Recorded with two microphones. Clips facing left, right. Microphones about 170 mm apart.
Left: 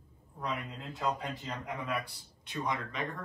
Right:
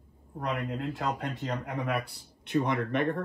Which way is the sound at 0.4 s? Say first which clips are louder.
Right 6 dB; 65° right (ahead or behind).